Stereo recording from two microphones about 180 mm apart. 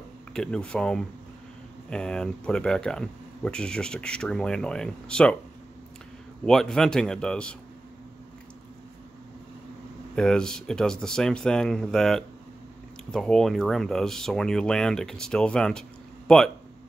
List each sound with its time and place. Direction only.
0.3 s speech: 5° left (ahead or behind)
6.4 s speech: 5° left (ahead or behind)
10.1 s speech: 5° left (ahead or behind)